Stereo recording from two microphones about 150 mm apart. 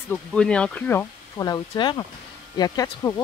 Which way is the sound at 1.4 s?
25° left (ahead or behind).